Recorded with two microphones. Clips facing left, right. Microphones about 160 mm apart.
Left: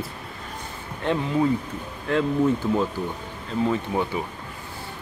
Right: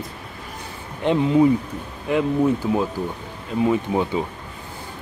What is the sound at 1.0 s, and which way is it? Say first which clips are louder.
Speech: right 6 dB; 15° right (ahead or behind).